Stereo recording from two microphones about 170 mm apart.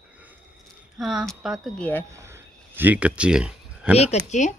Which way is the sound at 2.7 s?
10° right (ahead or behind).